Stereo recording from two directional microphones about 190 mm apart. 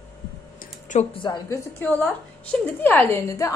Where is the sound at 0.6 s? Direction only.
40° left (ahead or behind).